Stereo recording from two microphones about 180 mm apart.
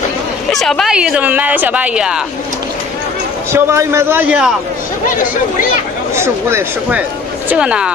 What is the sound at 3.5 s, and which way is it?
A man's voice, 15° right (ahead or behind).